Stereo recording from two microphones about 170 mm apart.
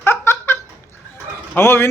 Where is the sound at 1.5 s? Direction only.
10° left (ahead or behind).